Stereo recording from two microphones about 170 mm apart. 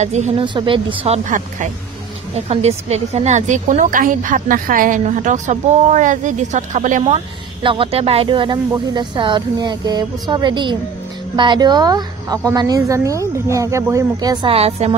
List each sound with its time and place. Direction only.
0.0 s speech: 40° right (ahead or behind)
0.6 s a woman's voice: 30° right (ahead or behind); by 7.2 s 45° right (ahead or behind)
7.6 s speech: 30° right (ahead or behind)
14.5 s speech: 35° right (ahead or behind)